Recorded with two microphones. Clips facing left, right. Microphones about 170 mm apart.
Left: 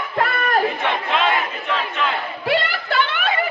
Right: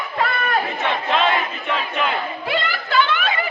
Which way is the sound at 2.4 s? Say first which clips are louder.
Left 6 dB; 65° left (ahead or behind).